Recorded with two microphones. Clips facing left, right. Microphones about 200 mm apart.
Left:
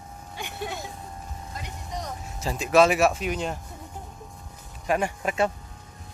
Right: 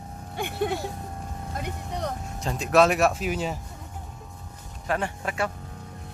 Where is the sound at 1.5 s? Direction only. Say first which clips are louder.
Right 3 dB; 60° right (ahead or behind).